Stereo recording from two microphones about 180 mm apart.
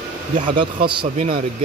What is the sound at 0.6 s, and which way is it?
Speech, 25° right (ahead or behind).